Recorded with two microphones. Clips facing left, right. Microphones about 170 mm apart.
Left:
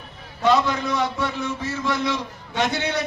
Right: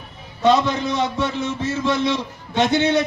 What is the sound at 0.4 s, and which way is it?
A man's voice, 20° right (ahead or behind).